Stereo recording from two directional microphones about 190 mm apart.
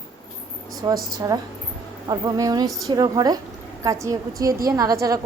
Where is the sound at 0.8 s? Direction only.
25° right (ahead or behind).